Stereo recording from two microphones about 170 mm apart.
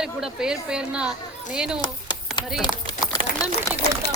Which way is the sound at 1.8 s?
25° left (ahead or behind).